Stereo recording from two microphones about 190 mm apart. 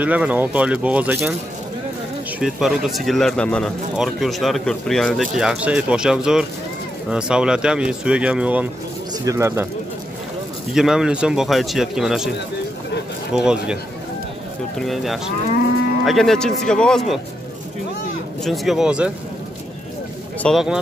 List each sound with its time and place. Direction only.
0.0 s speech: 10° right (ahead or behind)
2.4 s speech: centre (ahead or behind)
10.7 s speech: 5° right (ahead or behind)
13.3 s speech: 5° right (ahead or behind)
14.8 s speech: centre (ahead or behind)
18.4 s speech: centre (ahead or behind)
20.4 s speech: centre (ahead or behind)